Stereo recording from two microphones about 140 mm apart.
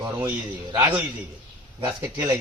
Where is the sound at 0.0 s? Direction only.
20° right (ahead or behind).